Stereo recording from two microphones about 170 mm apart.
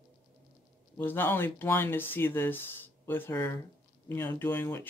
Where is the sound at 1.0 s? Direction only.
10° left (ahead or behind).